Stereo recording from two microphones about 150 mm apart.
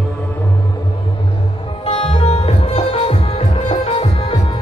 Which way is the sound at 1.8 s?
40° left (ahead or behind).